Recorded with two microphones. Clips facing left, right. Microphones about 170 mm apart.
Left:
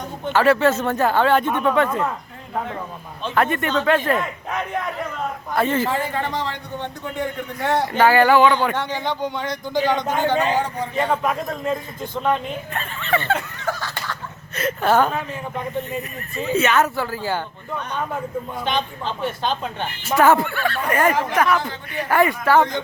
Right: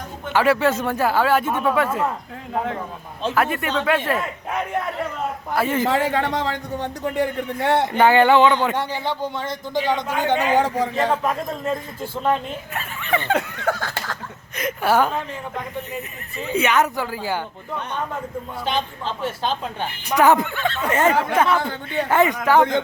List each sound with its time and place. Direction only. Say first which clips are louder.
0.3 s speech: left 1 dB; 10° right (ahead or behind)
3.3 s speech: left 3 dB; 5° right (ahead or behind)
5.9 s speech: right 3 dB; 85° right; by 13.3 s 15° right (ahead or behind)
13.3 s a sound: right 3 dB; 60° right (ahead or behind)
14.5 s speech: left 1 dB; 10° right (ahead or behind)
18.6 s speech: right 1 dB; 5° right (ahead or behind)
20.1 s speech: even; 15° right (ahead or behind)